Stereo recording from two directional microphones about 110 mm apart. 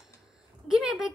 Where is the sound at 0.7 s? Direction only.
5° right (ahead or behind).